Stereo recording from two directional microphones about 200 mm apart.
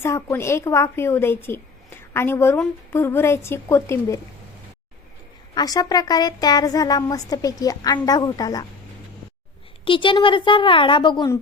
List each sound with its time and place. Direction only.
0.0 s a woman's voice: 15° left (ahead or behind)
5.5 s speech: 20° left (ahead or behind)
9.8 s speech: 25° left (ahead or behind)